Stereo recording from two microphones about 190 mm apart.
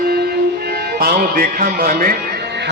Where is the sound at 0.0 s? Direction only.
55° right (ahead or behind).